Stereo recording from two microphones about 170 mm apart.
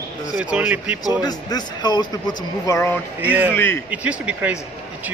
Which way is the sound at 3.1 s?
10° right (ahead or behind).